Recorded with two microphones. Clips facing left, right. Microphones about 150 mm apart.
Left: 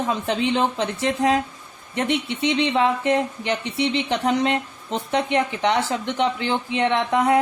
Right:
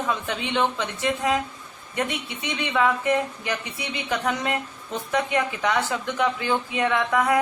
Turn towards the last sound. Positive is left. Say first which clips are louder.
# left 3 dB
turn(degrees=25)  # may be behind; listen again after turning